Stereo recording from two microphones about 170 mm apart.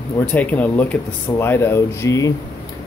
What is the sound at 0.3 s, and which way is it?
Speech, 10° left (ahead or behind).